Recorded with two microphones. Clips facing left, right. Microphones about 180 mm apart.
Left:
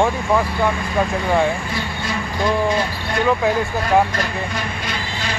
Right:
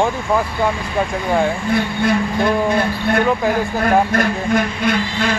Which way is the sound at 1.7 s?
55° right (ahead or behind).